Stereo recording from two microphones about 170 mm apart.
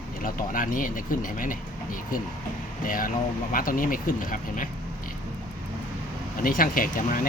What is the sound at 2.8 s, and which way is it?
Speech, 55° left (ahead or behind).